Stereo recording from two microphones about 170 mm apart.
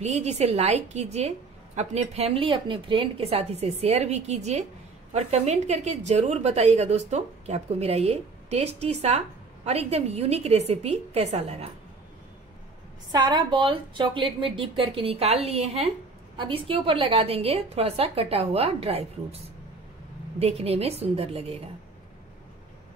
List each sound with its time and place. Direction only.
0.0 s a woman's voice: 40° right (ahead or behind)
13.1 s a woman's voice: 25° right (ahead or behind)
20.3 s a woman's voice: 35° right (ahead or behind)